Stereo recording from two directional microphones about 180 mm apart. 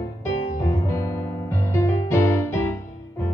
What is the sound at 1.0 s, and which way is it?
Music, 15° left (ahead or behind).